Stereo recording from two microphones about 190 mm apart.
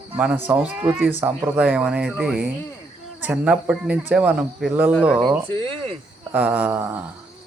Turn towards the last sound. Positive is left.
turn(degrees=-10)  # may be behind; listen again after turning